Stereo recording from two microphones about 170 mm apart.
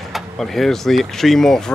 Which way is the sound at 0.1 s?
Centre (ahead or behind).